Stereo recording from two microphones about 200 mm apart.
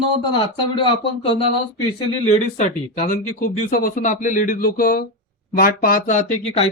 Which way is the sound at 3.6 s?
45° left (ahead or behind).